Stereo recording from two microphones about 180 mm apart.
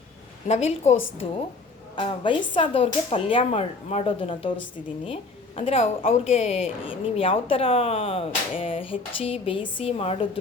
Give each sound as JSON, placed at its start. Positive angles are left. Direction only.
{"t": 0.4, "sound": "a woman's voice", "side_deg": 35}
{"t": 2.0, "sound": "a woman's voice", "side_deg": 30}